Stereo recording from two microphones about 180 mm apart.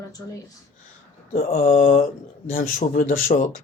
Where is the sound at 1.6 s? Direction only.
45° left (ahead or behind).